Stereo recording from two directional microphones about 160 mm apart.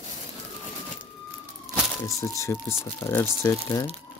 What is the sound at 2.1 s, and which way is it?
Speech, 20° left (ahead or behind).